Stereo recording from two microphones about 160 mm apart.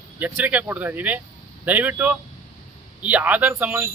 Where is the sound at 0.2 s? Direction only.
10° right (ahead or behind).